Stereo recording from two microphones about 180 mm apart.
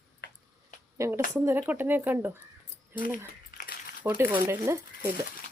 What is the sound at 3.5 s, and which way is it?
Crumpling, 55° left (ahead or behind).